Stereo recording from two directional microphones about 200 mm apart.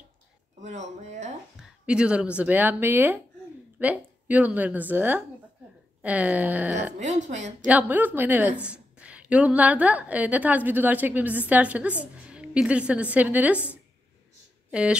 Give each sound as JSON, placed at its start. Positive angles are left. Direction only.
{"t": 0.6, "sound": "speech", "side_deg": -35}
{"t": 1.6, "sound": "a woman's voice", "side_deg": -5}
{"t": 7.0, "sound": "speech", "side_deg": -35}
{"t": 7.6, "sound": "a woman's voice", "side_deg": -10}
{"t": 14.7, "sound": "speech", "side_deg": -5}